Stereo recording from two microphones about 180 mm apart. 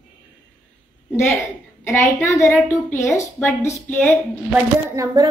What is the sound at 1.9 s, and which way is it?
Speech, 15° left (ahead or behind).